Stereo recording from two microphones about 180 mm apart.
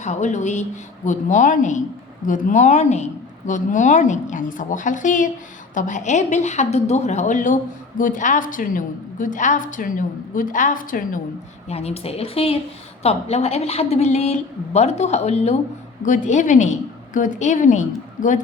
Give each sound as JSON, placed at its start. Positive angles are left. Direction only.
{"t": 0.0, "sound": "a woman's voice", "side_deg": 40}
{"t": 11.7, "sound": "a woman's voice", "side_deg": 35}